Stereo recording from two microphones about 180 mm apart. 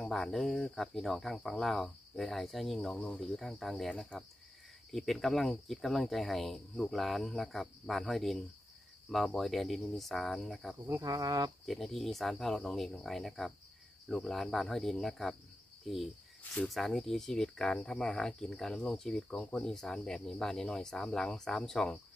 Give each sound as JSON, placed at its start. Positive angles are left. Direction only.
{"t": 0.0, "sound": "speech", "side_deg": 0}
{"t": 10.9, "sound": "speech", "side_deg": -20}
{"t": 11.6, "sound": "speech", "side_deg": 0}
{"t": 16.5, "sound": "speech", "side_deg": 0}